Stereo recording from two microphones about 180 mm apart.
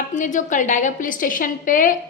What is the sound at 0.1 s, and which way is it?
A woman's voice, 45° left (ahead or behind).